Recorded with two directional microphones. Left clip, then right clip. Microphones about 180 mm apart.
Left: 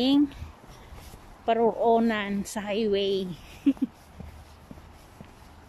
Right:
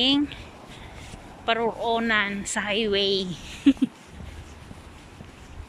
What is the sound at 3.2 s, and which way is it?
Speech, 5° left (ahead or behind).